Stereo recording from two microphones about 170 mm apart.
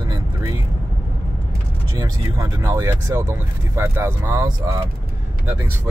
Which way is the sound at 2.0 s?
20° right (ahead or behind).